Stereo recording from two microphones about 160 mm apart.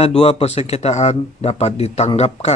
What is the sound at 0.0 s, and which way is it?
Speech, 40° left (ahead or behind).